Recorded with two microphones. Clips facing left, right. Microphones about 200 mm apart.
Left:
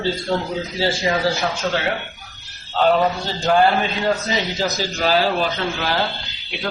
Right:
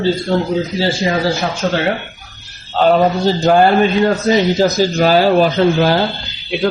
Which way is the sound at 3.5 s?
50° right (ahead or behind).